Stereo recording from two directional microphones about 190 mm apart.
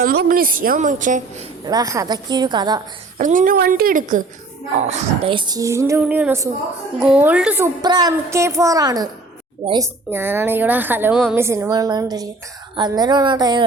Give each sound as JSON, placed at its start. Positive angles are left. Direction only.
{"t": 0.0, "sound": "a woman's voice", "side_deg": -50}
{"t": 1.6, "sound": "a woman's voice", "side_deg": -20}
{"t": 3.2, "sound": "a woman's voice", "side_deg": -45}